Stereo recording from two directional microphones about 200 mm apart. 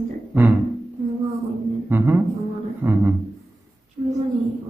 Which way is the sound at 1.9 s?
10° right (ahead or behind).